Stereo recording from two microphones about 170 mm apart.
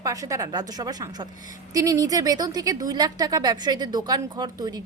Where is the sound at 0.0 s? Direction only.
20° right (ahead or behind).